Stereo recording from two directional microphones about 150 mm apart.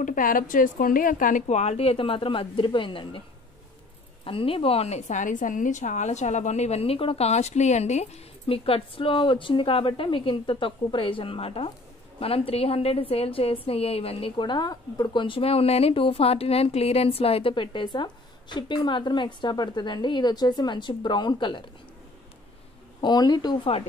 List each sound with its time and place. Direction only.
0.0 s speech: 65° left (ahead or behind); by 3.2 s 35° left (ahead or behind)
4.2 s a woman's voice: 35° left (ahead or behind)
22.9 s speech: 30° left (ahead or behind)